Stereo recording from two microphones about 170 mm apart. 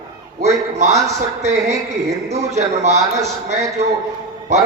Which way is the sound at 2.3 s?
40° right (ahead or behind).